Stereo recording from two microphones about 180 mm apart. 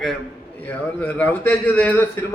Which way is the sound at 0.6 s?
10° left (ahead or behind).